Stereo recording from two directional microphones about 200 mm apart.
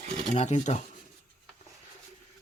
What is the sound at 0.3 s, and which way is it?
Speech, 35° left (ahead or behind).